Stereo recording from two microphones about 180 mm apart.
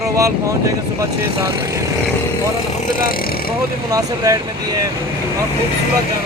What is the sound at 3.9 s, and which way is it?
Speech, 20° right (ahead or behind).